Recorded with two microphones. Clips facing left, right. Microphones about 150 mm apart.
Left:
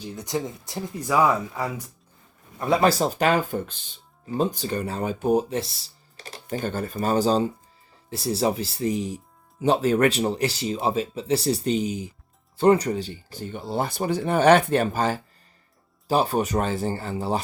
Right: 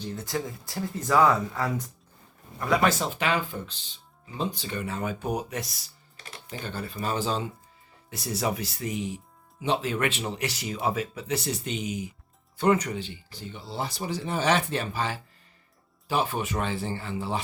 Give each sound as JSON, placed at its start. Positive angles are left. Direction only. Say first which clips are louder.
{"t": 0.0, "sound": "speech", "louder": "left 3 dB", "side_deg": 20}
{"t": 2.6, "sound": "speech", "louder": "left 4 dB", "side_deg": 25}